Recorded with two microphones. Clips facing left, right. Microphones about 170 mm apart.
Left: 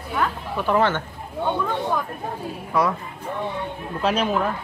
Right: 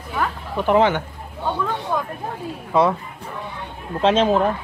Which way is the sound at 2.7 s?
25° right (ahead or behind).